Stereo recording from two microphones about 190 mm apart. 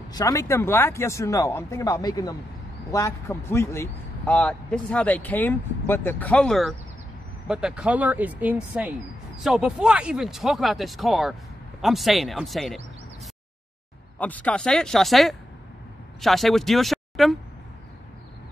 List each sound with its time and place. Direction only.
0.1 s speech: 15° left (ahead or behind); by 12.7 s centre (ahead or behind)
14.1 s speech: 10° left (ahead or behind)